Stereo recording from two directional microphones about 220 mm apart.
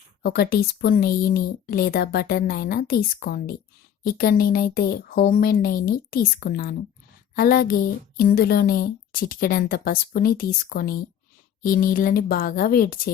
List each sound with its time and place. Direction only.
0.2 s a woman's voice: 45° left (ahead or behind)